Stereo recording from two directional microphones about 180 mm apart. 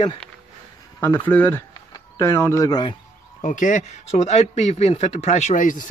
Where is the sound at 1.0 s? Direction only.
10° left (ahead or behind).